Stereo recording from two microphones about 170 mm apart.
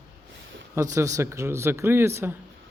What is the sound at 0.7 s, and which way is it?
Speech, 20° right (ahead or behind).